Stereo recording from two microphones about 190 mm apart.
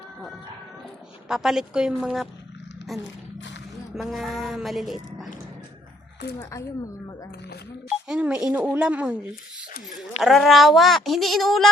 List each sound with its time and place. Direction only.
1.3 s speech: centre (ahead or behind)
6.4 s speech: 15° left (ahead or behind)
7.9 s speech: 5° right (ahead or behind)
10.2 s speech: centre (ahead or behind)